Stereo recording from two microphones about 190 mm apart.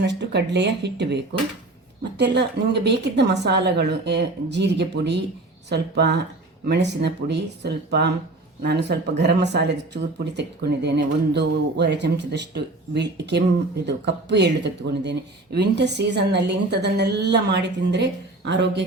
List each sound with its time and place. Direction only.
0.0 s speech: 65° right (ahead or behind)